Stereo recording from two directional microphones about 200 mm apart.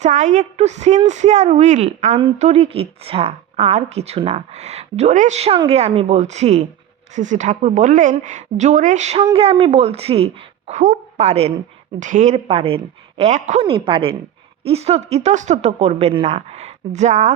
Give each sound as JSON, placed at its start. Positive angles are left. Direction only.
{"t": 0.0, "sound": "a woman's voice", "side_deg": -35}